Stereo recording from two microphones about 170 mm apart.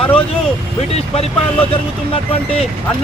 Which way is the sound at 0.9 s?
35° left (ahead or behind).